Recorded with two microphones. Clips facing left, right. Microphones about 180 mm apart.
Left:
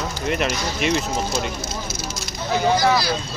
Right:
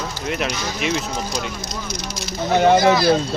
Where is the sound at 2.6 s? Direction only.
65° right (ahead or behind).